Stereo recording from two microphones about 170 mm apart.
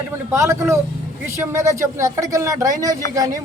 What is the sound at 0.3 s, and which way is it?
Speech, 15° right (ahead or behind).